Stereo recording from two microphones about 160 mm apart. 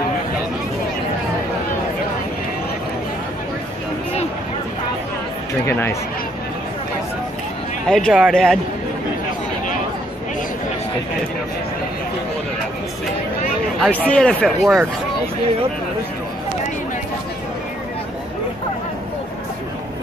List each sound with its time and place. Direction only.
5.5 s speech: 15° left (ahead or behind)
7.9 s speech: centre (ahead or behind)
13.7 s speech: 10° left (ahead or behind)